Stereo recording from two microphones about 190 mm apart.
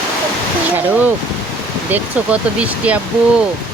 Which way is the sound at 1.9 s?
5° right (ahead or behind).